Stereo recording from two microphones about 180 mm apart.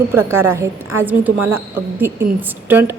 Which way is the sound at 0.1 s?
15° right (ahead or behind).